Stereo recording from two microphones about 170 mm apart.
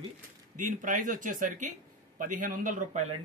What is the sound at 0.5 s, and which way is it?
Speech, 50° right (ahead or behind).